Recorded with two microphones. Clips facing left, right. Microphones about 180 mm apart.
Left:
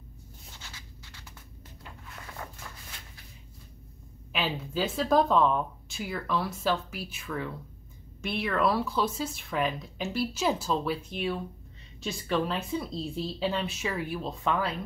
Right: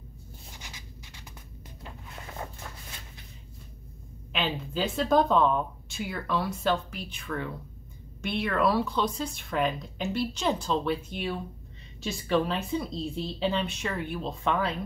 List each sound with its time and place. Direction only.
0.5 s a sound: 15° right (ahead or behind)
1.8 s music: 25° right (ahead or behind)
4.3 s speech: 5° left (ahead or behind)